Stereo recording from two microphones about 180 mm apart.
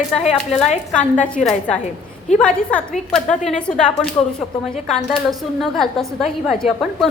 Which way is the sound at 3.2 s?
40° left (ahead or behind).